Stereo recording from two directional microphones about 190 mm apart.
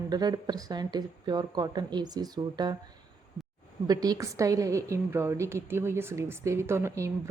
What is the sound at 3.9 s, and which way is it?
A woman's voice, 20° right (ahead or behind).